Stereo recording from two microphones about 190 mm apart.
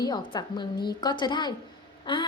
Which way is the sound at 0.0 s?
20° left (ahead or behind).